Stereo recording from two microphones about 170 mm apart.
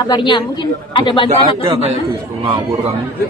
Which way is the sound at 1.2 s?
35° right (ahead or behind).